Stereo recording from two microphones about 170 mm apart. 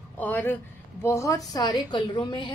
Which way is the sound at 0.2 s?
10° left (ahead or behind).